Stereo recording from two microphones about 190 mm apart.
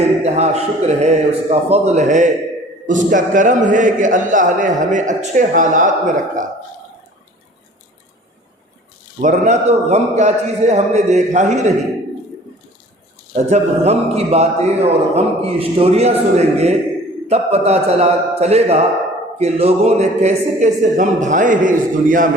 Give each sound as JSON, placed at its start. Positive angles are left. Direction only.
{"t": 0.2, "sound": "a man's voice", "side_deg": -35}
{"t": 9.2, "sound": "a man's voice", "side_deg": -40}
{"t": 13.3, "sound": "a man's voice", "side_deg": -35}